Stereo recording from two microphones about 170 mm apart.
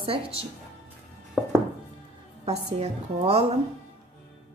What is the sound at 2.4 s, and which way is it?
A woman's voice, 40° right (ahead or behind).